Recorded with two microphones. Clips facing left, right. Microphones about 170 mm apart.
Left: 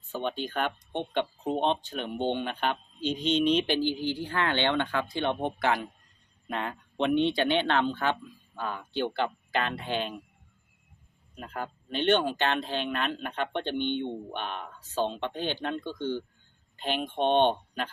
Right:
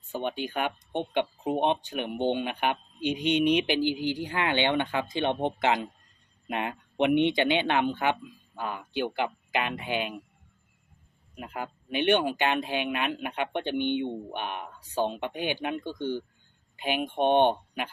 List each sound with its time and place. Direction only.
0.1 s speech: 15° right (ahead or behind)
11.3 s speech: 10° right (ahead or behind)